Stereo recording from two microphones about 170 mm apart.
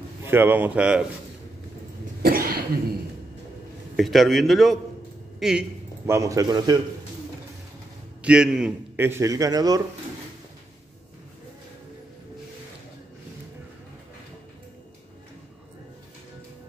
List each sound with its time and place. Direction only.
0.2 s a man's voice: 15° right (ahead or behind)
2.2 s cough: 60° right (ahead or behind)
3.9 s a man's voice: centre (ahead or behind)
6.0 s speech: 15° right (ahead or behind)
8.2 s a man's voice: 5° right (ahead or behind); by 9.8 s 20° right (ahead or behind)